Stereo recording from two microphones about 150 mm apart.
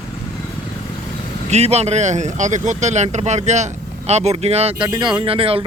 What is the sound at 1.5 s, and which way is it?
Speech, 45° right (ahead or behind).